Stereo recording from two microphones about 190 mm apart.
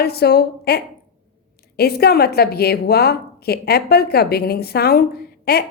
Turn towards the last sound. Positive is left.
turn(degrees=55)  # may be behind; listen again after turning